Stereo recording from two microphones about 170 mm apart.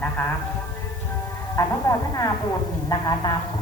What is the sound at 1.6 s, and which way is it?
Speech, 20° left (ahead or behind).